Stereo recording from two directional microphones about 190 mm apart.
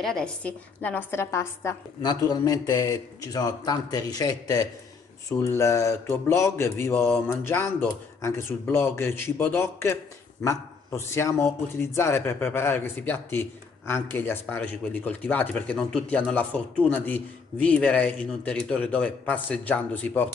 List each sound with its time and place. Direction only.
0.0 s a woman's voice: 5° left (ahead or behind)